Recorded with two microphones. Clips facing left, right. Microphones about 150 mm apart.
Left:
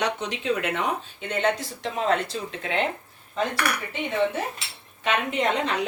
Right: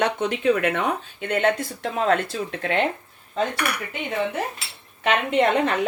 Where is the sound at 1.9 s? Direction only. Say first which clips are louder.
Right 3 dB; 50° right (ahead or behind).